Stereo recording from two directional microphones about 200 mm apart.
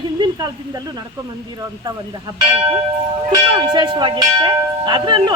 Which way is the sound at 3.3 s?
25° right (ahead or behind).